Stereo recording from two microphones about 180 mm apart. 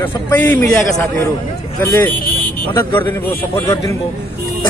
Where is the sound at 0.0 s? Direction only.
10° left (ahead or behind).